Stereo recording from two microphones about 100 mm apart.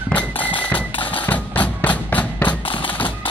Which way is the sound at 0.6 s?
15° left (ahead or behind).